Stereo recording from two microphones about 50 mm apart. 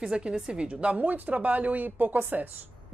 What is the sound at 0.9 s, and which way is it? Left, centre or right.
Speech, right.